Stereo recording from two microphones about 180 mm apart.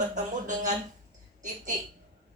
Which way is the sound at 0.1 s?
45° right (ahead or behind).